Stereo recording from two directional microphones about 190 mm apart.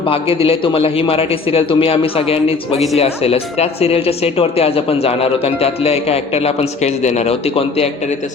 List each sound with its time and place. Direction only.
0.1 s a man's voice: 30° left (ahead or behind)